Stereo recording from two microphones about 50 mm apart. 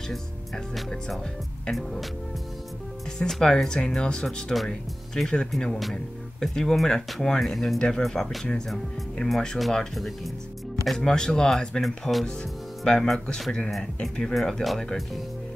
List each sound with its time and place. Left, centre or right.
0.7 s speech: centre
3.2 s speech: centre
12.8 s speech: centre
14.3 s speech: centre